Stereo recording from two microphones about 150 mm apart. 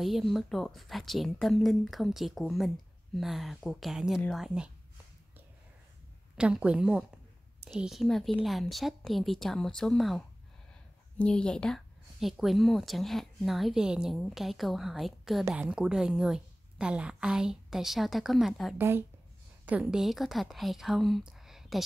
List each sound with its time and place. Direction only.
0.0 s speech: centre (ahead or behind)
6.3 s speech: 5° right (ahead or behind)
18.8 s speech: 15° right (ahead or behind)